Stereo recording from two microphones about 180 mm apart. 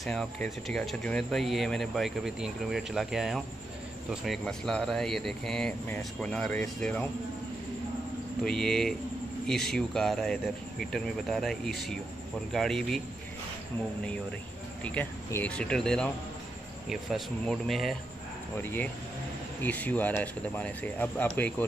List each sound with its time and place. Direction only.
0.0 s speech: 5° left (ahead or behind)
8.5 s speech: 5° left (ahead or behind)
14.8 s speech: 5° left (ahead or behind)
18.6 s speech: 10° left (ahead or behind)